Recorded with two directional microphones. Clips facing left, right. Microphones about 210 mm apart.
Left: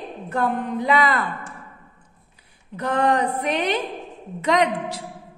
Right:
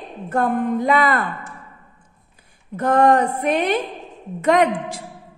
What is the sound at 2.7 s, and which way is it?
A woman's voice, 50° right (ahead or behind).